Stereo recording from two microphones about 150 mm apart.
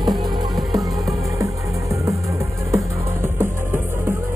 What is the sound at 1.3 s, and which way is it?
Music, 20° right (ahead or behind).